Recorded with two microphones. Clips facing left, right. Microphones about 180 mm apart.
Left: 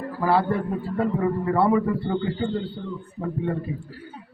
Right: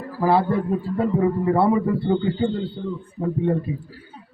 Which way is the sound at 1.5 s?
15° right (ahead or behind).